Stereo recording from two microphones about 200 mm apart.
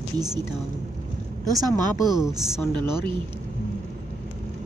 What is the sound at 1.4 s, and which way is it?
Speech, 20° right (ahead or behind).